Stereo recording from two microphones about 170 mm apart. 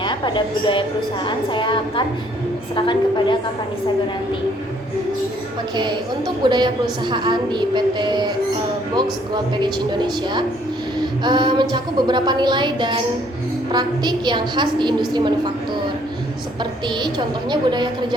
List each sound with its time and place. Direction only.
0.0 s a woman's voice: 30° left (ahead or behind)
5.7 s a woman's voice: 25° right (ahead or behind)
9.3 s a woman's voice: 25° right (ahead or behind)
16.9 s a woman's voice: 25° right (ahead or behind)